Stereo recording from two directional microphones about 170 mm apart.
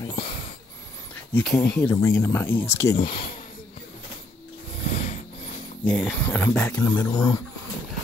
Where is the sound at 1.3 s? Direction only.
5° left (ahead or behind).